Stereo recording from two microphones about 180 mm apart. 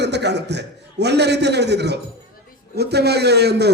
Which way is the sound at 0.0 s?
70° right (ahead or behind).